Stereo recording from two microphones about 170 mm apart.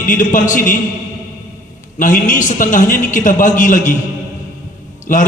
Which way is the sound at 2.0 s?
50° left (ahead or behind).